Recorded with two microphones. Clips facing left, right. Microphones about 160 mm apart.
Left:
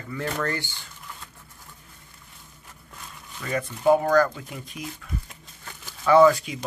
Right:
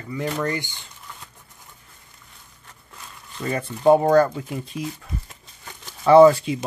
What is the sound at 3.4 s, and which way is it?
Speech, 30° right (ahead or behind).